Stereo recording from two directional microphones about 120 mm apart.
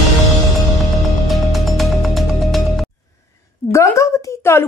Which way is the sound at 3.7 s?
25° left (ahead or behind).